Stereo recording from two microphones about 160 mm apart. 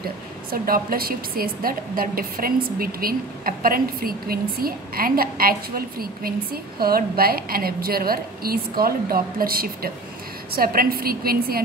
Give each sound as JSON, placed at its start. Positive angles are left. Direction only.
{"t": 0.5, "sound": "a woman's voice", "side_deg": -65}